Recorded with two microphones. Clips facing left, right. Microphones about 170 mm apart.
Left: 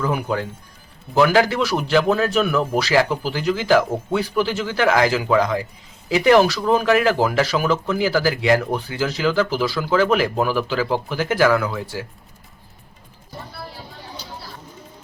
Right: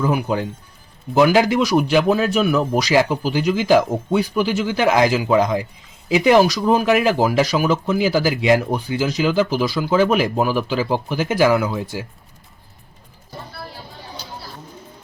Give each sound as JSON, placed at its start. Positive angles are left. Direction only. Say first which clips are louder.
{"t": 0.0, "sound": "speech", "louder": "right 2 dB", "side_deg": -10}